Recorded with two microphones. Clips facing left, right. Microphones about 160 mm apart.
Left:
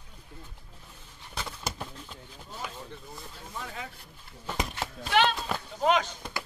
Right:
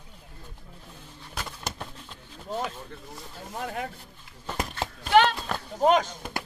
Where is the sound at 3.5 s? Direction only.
60° right (ahead or behind).